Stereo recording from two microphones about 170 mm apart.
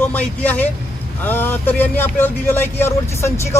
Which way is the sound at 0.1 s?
10° left (ahead or behind).